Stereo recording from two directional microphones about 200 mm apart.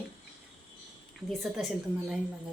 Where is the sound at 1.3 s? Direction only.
Centre (ahead or behind).